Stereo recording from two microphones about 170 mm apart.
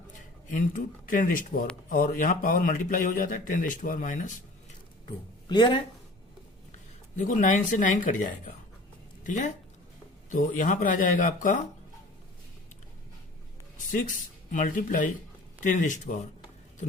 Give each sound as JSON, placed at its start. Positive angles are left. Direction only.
{"t": 0.5, "sound": "speech", "side_deg": 50}
{"t": 5.5, "sound": "speech", "side_deg": 30}
{"t": 7.2, "sound": "speech", "side_deg": 50}
{"t": 13.7, "sound": "speech", "side_deg": 50}